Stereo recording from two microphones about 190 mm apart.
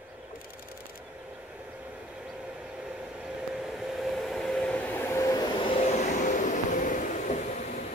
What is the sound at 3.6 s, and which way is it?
Vehicle, centre (ahead or behind).